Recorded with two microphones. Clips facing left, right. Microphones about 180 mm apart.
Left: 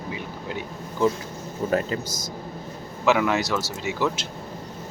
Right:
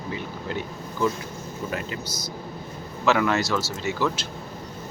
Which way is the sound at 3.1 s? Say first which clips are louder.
Left 1 dB; 10° left (ahead or behind).